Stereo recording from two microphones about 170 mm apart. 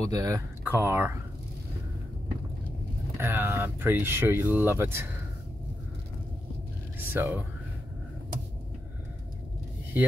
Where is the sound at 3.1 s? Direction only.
15° right (ahead or behind).